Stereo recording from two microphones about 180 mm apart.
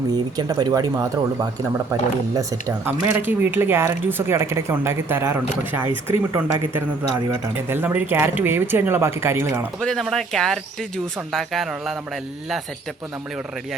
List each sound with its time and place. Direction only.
0.1 s speech: 20° right (ahead or behind)
9.8 s speech: centre (ahead or behind)